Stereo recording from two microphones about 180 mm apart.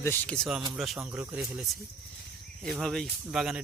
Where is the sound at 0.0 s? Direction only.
10° left (ahead or behind); by 1.6 s 5° right (ahead or behind).